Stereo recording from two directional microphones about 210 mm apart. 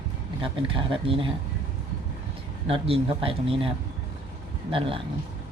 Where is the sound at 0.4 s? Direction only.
25° right (ahead or behind).